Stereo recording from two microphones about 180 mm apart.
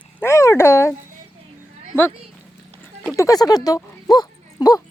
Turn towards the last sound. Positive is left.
turn(degrees=20)  # may be behind; listen again after turning